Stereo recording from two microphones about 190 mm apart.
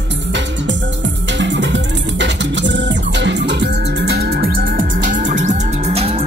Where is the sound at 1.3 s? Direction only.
70° right (ahead or behind).